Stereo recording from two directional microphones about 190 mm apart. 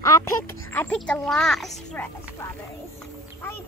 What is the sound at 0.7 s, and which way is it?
A child's voice, 5° left (ahead or behind).